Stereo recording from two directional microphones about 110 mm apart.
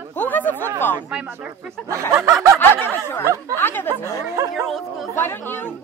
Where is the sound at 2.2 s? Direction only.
30° right (ahead or behind).